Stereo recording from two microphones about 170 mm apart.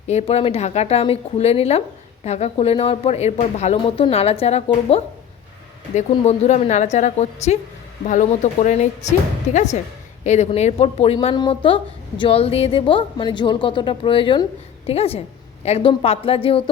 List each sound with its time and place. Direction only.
0.1 s a woman's voice: 40° left (ahead or behind)